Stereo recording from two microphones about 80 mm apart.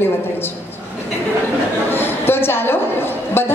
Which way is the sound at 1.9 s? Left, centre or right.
Left.